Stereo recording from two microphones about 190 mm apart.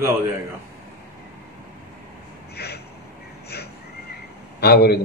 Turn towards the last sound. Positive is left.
turn(degrees=60)  # may be behind; listen again after turning